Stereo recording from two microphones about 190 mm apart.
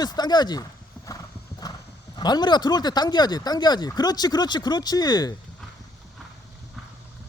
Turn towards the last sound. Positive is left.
turn(degrees=20)  # may be behind; listen again after turning